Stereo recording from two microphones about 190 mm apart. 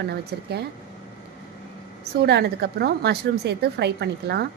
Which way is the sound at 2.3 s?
60° right (ahead or behind).